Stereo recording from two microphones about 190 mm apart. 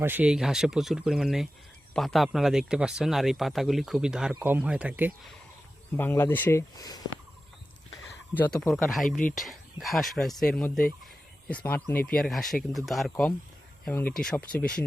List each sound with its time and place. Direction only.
0.0 s speech: 10° right (ahead or behind)
6.0 s speech: 10° left (ahead or behind)
8.4 s speech: 5° left (ahead or behind)
9.0 s speech: 45° left (ahead or behind)
9.3 s speech: centre (ahead or behind)